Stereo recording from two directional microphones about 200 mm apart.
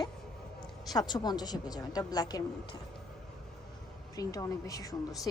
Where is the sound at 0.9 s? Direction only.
20° left (ahead or behind).